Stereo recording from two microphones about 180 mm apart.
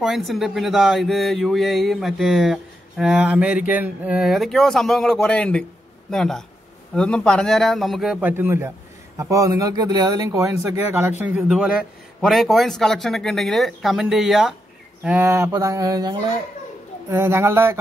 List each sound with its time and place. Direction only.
0.0 s speech: centre (ahead or behind)
15.0 s mantra: 10° right (ahead or behind)